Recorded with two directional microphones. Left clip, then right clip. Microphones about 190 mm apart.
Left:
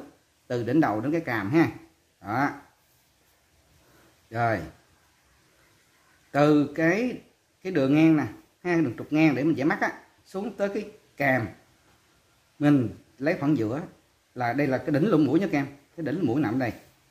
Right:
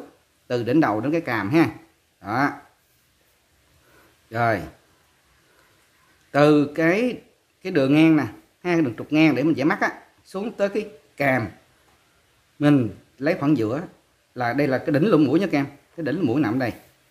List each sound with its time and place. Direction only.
0.5 s a man's voice: 20° right (ahead or behind)
4.3 s a man's voice: 20° right (ahead or behind)
6.3 s a man's voice: 20° right (ahead or behind)
12.5 s a man's voice: 20° right (ahead or behind)